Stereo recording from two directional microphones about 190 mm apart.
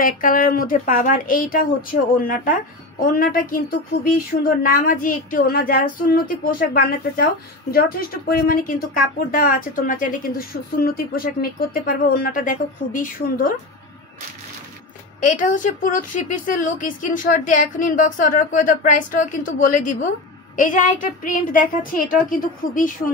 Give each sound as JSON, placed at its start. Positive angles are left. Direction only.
{"t": 0.0, "sound": "a woman's voice", "side_deg": 45}
{"t": 15.2, "sound": "a woman's voice", "side_deg": 45}